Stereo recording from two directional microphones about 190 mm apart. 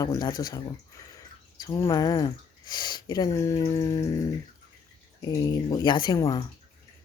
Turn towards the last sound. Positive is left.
turn(degrees=15)  # may be behind; listen again after turning